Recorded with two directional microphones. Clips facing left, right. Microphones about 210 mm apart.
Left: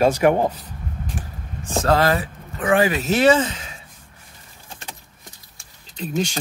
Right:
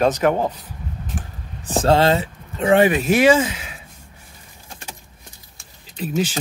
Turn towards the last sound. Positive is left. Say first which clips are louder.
# right 2 dB
turn(degrees=-5)  # may be behind; listen again after turning